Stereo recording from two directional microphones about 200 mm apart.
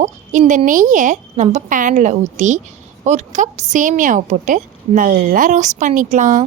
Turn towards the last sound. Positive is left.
turn(degrees=-40)  # may be behind; listen again after turning